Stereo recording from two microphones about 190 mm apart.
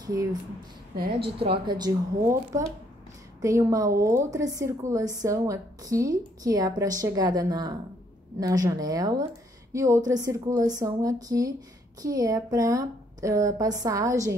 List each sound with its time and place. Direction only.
0.0 s a woman's voice: 20° right (ahead or behind)
0.9 s a woman's voice: 55° right (ahead or behind)
1.4 s a woman's voice: 25° right (ahead or behind)